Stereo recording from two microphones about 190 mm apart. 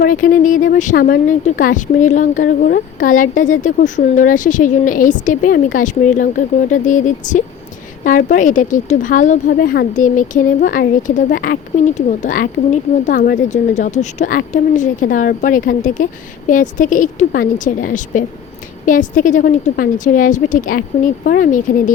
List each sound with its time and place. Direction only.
0.0 s speech: 45° left (ahead or behind)